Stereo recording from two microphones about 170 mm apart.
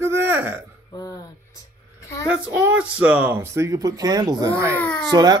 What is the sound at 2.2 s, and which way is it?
Speech, 10° right (ahead or behind).